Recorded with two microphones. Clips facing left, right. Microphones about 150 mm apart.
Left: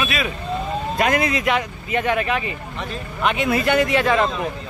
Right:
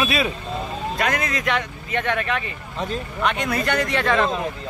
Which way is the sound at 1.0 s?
15° left (ahead or behind).